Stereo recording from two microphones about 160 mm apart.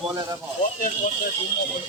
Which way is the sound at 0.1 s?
25° right (ahead or behind).